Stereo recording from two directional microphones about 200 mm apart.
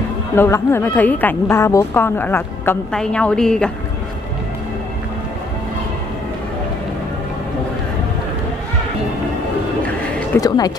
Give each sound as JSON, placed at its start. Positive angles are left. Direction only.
{"t": 0.4, "sound": "a woman's voice", "side_deg": 10}
{"t": 10.3, "sound": "a woman's voice", "side_deg": 20}